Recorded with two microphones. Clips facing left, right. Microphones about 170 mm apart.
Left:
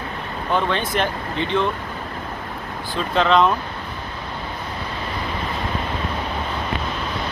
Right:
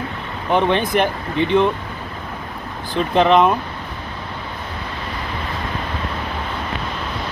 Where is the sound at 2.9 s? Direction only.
15° right (ahead or behind).